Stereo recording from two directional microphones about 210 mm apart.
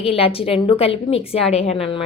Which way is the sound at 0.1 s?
25° left (ahead or behind).